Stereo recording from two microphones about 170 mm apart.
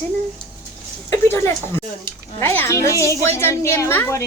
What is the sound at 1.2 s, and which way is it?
A woman's voice, 15° left (ahead or behind).